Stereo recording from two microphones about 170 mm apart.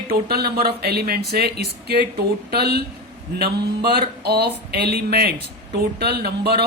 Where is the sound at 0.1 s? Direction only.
65° right (ahead or behind).